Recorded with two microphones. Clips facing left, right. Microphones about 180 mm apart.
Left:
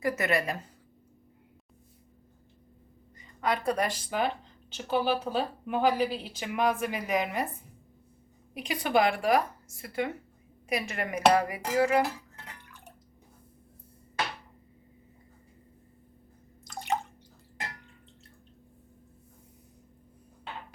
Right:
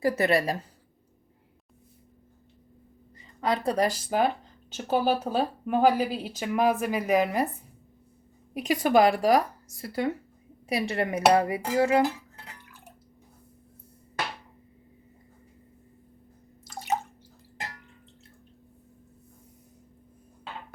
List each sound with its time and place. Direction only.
0.0 s speech: 30° right (ahead or behind)
3.2 s a woman's voice: 30° right (ahead or behind)
8.5 s speech: 45° right (ahead or behind); by 12.0 s 25° right (ahead or behind)